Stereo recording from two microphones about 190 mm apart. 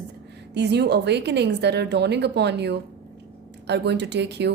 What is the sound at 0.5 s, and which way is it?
A woman's voice, 60° right (ahead or behind).